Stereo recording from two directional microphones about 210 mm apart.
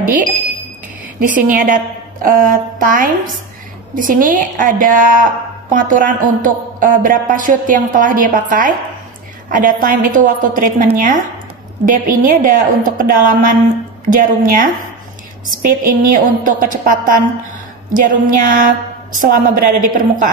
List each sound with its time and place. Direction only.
0.0 s a woman's voice: 40° right (ahead or behind)